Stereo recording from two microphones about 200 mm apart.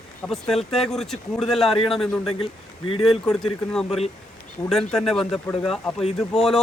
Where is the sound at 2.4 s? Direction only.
25° left (ahead or behind).